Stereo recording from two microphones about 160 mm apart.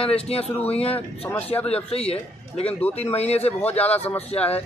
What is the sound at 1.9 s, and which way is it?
Speech, 40° left (ahead or behind).